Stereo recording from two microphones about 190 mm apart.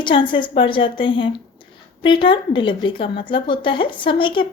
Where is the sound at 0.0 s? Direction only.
25° left (ahead or behind).